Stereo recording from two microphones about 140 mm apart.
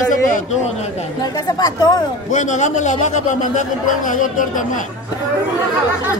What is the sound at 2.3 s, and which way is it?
A man's voice, 60° left (ahead or behind).